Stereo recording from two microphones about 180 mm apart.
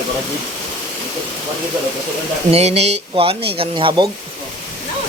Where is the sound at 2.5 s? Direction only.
35° right (ahead or behind).